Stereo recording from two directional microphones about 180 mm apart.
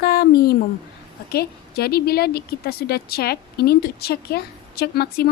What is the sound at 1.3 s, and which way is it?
A woman's voice, 60° left (ahead or behind).